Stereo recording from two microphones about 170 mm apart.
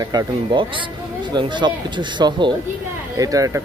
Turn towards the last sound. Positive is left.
turn(degrees=-20)  # may be behind; listen again after turning